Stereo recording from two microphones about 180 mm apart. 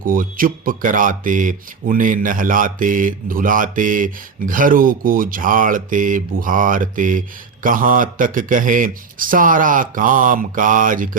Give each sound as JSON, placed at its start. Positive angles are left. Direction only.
{"t": 0.0, "sound": "speech", "side_deg": -50}